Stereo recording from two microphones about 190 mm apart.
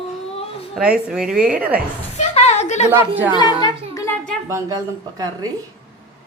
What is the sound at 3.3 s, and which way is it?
Speech, 20° left (ahead or behind).